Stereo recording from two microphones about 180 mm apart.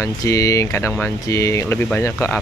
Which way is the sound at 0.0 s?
15° left (ahead or behind).